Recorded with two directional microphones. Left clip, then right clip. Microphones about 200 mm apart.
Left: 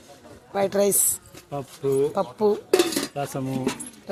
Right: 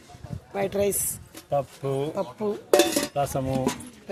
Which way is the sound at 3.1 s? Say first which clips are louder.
Right 3 dB; 40° right (ahead or behind).